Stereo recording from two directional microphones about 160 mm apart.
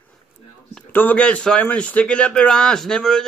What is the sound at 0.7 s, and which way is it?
Speech, 10° left (ahead or behind).